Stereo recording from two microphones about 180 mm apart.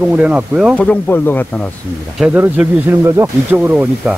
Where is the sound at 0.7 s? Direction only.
5° left (ahead or behind).